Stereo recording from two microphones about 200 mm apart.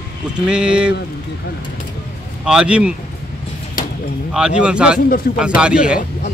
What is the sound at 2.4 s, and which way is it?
Speech, 5° right (ahead or behind).